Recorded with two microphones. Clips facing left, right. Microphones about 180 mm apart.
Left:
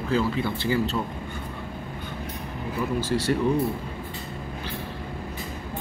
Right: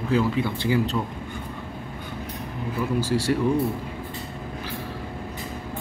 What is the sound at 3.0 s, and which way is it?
Speech, 10° right (ahead or behind).